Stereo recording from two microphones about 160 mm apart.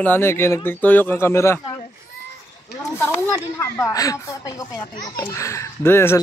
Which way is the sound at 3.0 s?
15° left (ahead or behind).